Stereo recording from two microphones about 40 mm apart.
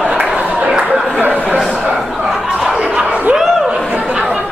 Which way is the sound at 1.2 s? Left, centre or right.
Right.